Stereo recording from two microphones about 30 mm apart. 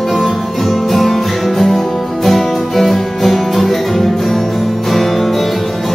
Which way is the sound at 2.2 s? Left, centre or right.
Centre.